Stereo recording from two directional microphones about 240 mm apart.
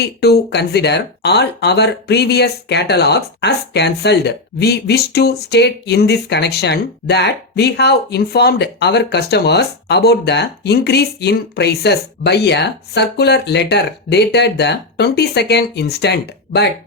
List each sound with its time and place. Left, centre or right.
0.0 s speech: left